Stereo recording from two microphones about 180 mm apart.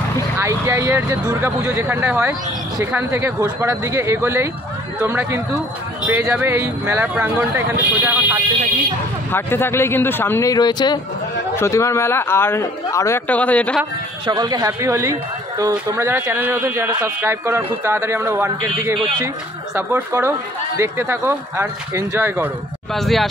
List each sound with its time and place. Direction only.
0.4 s speech: 15° right (ahead or behind)
9.3 s a man's voice: 10° left (ahead or behind)
14.2 s speech: 20° right (ahead or behind)
22.9 s speech: centre (ahead or behind)